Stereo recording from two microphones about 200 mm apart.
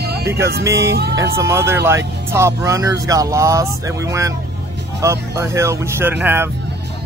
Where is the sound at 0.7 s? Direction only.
15° right (ahead or behind).